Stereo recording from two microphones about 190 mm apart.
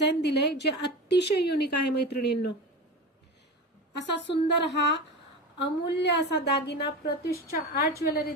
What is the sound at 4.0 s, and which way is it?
Female singing, 70° left (ahead or behind).